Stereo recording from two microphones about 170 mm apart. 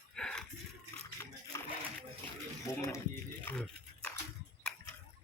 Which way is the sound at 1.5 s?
15° left (ahead or behind).